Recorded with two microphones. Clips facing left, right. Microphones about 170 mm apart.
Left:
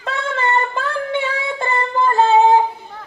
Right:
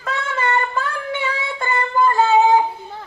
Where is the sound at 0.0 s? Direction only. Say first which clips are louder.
Left 1 dB; 30° left (ahead or behind).